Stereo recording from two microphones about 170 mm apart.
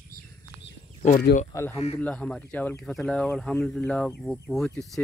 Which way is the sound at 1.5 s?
15° left (ahead or behind).